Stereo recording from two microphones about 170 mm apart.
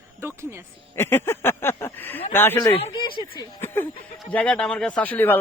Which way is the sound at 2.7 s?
30° left (ahead or behind).